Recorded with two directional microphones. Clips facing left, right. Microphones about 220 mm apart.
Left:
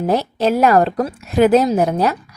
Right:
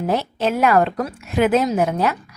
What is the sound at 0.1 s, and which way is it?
A woman's voice, 40° left (ahead or behind).